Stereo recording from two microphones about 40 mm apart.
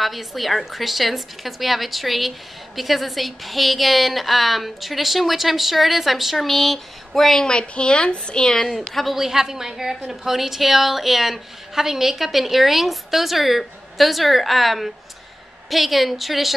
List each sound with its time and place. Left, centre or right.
0.0 s a woman's voice: centre
7.4 s a woman's voice: left
8.6 s a woman's voice: centre